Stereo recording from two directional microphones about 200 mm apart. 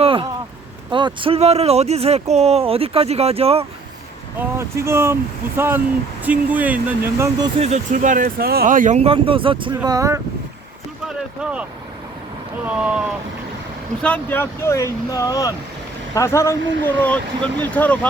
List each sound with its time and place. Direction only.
0.0 s a sound: 25° right (ahead or behind)
0.9 s speech: 25° right (ahead or behind)
4.4 s speech: 15° right (ahead or behind)
7.6 s speech: 35° right (ahead or behind); by 10.2 s 15° right (ahead or behind)
11.3 s speech: 5° right (ahead or behind)
14.0 s speech: 10° left (ahead or behind)